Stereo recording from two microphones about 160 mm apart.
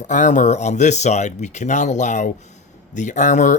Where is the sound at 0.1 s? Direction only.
50° left (ahead or behind).